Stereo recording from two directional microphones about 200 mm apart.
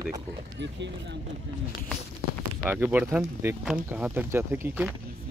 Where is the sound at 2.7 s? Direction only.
10° right (ahead or behind).